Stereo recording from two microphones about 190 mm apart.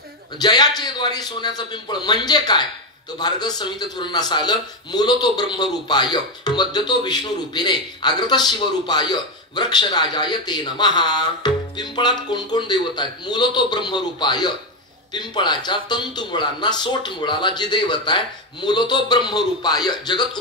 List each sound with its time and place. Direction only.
0.4 s a man's voice: 20° left (ahead or behind)